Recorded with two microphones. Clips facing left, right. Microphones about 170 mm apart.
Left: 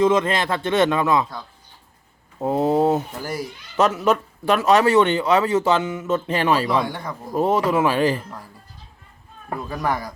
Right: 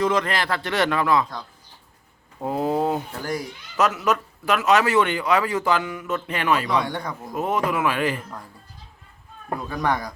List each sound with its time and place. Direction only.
0.0 s a man's voice: 25° left (ahead or behind)
2.4 s a man's voice: 25° left (ahead or behind)
6.7 s speech: centre (ahead or behind)
7.3 s speech: 30° left (ahead or behind)
9.6 s speech: 5° left (ahead or behind)